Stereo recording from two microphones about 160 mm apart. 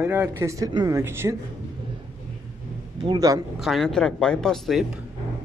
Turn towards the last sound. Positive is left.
turn(degrees=0)  # may be behind; listen again after turning